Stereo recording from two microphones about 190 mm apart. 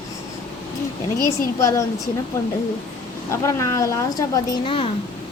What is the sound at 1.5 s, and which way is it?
Speech, 15° left (ahead or behind).